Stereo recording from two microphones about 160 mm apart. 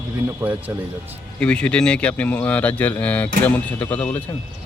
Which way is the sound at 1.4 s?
5° left (ahead or behind).